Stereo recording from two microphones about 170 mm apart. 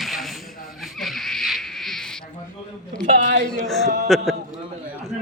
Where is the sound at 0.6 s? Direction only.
Centre (ahead or behind).